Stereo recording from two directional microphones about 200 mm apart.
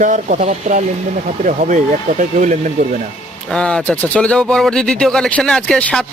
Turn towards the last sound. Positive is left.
turn(degrees=5)  # may be behind; listen again after turning